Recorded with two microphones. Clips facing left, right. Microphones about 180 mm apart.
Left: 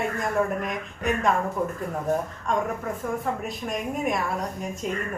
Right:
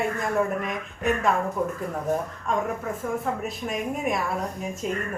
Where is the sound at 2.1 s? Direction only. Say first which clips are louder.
Left 1 dB; centre (ahead or behind).